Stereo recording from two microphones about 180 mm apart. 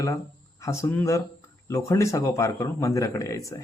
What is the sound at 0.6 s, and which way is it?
Speech, 15° left (ahead or behind).